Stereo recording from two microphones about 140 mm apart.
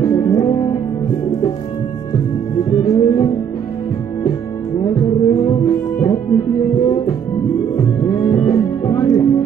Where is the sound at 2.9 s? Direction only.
35° left (ahead or behind).